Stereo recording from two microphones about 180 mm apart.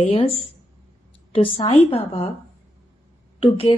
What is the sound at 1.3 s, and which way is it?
Speech, 35° left (ahead or behind).